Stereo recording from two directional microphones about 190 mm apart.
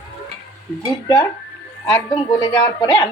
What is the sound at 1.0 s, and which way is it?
Speech, 20° left (ahead or behind).